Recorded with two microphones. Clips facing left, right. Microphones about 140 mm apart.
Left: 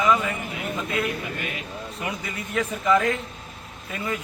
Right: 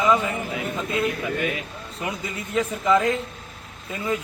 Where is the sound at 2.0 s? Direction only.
25° right (ahead or behind).